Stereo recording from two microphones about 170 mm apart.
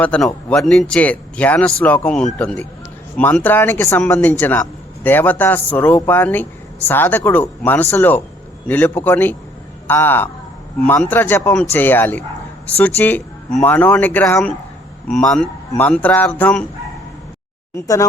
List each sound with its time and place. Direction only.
0.0 s speech: 5° left (ahead or behind)
17.7 s speech: 20° left (ahead or behind)